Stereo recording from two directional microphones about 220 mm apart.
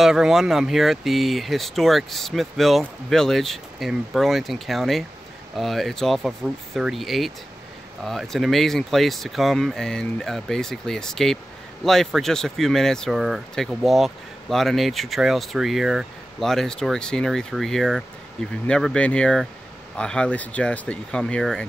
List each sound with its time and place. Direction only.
0.0 s speech: centre (ahead or behind)